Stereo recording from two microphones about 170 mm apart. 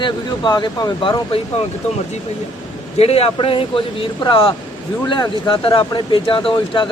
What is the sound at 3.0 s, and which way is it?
Speech, 35° left (ahead or behind).